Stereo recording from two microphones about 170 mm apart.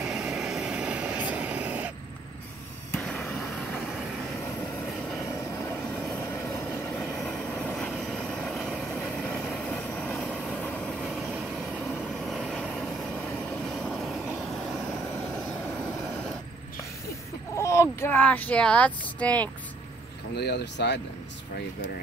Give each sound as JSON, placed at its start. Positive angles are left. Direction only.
{"t": 0.0, "sound": "vehicle", "side_deg": -5}
{"t": 3.0, "sound": "vehicle", "side_deg": 5}
{"t": 7.0, "sound": "vehicle", "side_deg": 0}
{"t": 17.6, "sound": "speech", "side_deg": 15}
{"t": 20.3, "sound": "speech", "side_deg": 75}